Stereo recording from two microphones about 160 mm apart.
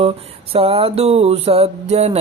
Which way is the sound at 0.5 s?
35° right (ahead or behind).